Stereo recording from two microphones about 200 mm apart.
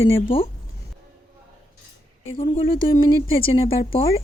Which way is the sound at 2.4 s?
30° left (ahead or behind).